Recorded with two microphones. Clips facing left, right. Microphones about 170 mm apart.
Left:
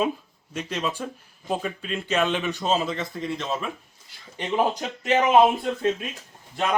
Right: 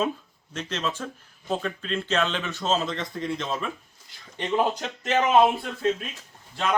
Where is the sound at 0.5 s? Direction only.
10° left (ahead or behind).